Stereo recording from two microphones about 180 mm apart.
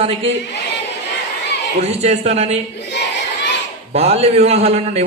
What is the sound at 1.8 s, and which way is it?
Speech, 35° right (ahead or behind).